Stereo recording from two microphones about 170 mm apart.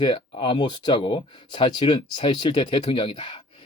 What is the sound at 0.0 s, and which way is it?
Speech, 30° left (ahead or behind).